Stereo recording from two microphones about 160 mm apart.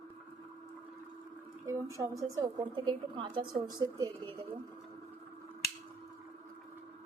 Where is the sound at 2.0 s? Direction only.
20° right (ahead or behind).